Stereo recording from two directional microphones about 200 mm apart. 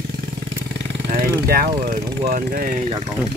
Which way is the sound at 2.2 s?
45° right (ahead or behind).